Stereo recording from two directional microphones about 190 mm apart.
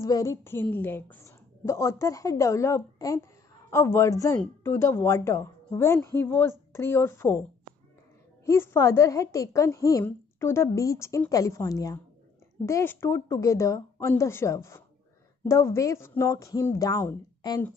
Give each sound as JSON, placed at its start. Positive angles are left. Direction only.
{"t": 0.0, "sound": "a woman's voice", "side_deg": 15}
{"t": 8.5, "sound": "a woman's voice", "side_deg": 15}